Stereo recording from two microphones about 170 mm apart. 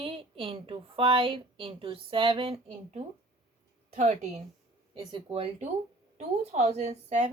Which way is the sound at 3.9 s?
45° right (ahead or behind).